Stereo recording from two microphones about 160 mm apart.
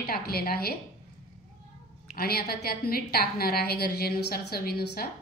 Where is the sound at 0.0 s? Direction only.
75° left (ahead or behind).